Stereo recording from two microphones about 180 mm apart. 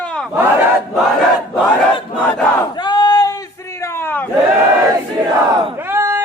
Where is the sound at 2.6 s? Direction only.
25° left (ahead or behind).